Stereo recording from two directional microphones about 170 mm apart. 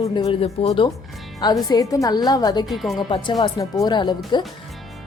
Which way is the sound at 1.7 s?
20° left (ahead or behind).